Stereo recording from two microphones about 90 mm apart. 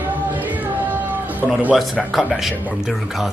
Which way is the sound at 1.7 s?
Centre (ahead or behind).